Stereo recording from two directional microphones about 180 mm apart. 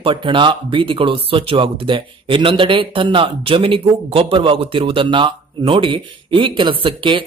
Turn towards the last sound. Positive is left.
turn(degrees=-30)  # may be behind; listen again after turning